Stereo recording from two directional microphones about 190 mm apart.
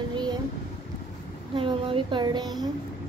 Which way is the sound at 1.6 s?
25° right (ahead or behind).